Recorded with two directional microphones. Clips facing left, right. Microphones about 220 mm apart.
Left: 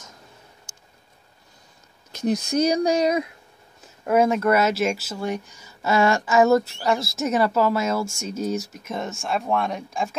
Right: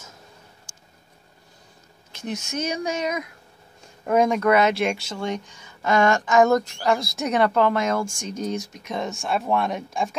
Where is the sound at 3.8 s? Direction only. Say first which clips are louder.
Left 1 dB; 5° left (ahead or behind).